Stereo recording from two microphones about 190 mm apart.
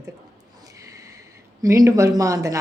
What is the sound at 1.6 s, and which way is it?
Speech, 15° right (ahead or behind).